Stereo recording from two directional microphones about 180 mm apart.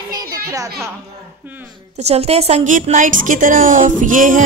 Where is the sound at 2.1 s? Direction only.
35° right (ahead or behind).